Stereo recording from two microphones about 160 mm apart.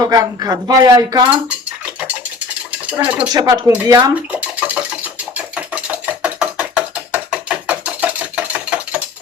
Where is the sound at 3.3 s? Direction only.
25° right (ahead or behind).